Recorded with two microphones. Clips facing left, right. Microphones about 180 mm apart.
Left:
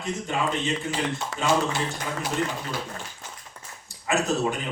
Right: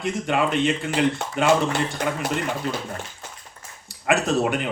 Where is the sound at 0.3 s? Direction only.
65° right (ahead or behind).